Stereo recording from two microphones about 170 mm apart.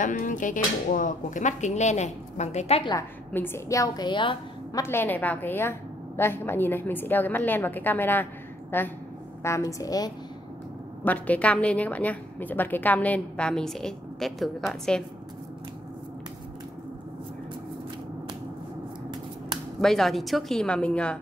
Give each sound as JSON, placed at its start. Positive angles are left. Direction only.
{"t": 0.0, "sound": "speech", "side_deg": 50}
{"t": 2.8, "sound": "a woman's voice", "side_deg": 25}
{"t": 4.8, "sound": "a woman's voice", "side_deg": 10}
{"t": 11.1, "sound": "a woman's voice", "side_deg": 10}
{"t": 19.8, "sound": "a woman's voice", "side_deg": 0}